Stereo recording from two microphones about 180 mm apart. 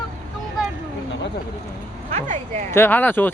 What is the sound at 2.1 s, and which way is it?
Speech, 45° right (ahead or behind).